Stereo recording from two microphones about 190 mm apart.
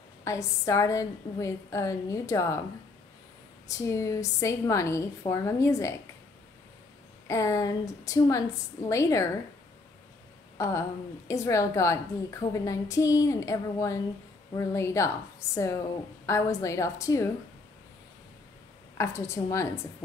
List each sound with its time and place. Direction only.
0.2 s a woman's voice: 15° left (ahead or behind)
3.6 s a woman's voice: 15° left (ahead or behind)
7.2 s a woman's voice: 15° left (ahead or behind)
10.6 s a woman's voice: 15° left (ahead or behind)
18.9 s a woman's voice: 15° left (ahead or behind)